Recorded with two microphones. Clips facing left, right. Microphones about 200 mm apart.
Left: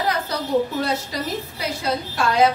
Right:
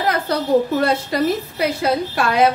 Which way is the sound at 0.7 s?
60° right (ahead or behind).